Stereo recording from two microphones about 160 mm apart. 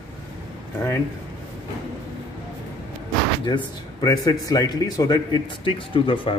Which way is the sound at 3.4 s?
25° left (ahead or behind).